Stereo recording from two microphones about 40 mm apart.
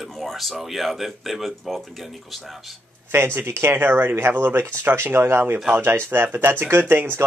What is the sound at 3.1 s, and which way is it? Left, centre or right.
Speech, right.